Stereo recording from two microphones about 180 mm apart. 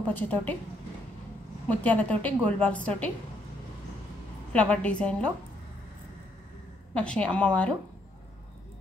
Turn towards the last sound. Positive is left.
turn(degrees=5)  # may be behind; listen again after turning